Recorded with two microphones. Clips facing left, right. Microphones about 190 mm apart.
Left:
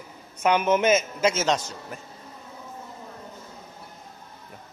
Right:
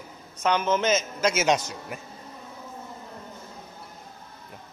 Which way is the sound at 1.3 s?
10° right (ahead or behind).